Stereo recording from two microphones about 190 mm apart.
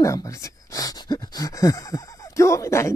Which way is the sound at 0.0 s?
15° left (ahead or behind).